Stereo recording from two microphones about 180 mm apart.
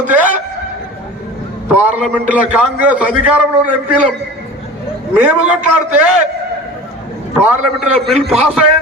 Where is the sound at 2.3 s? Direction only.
5° right (ahead or behind).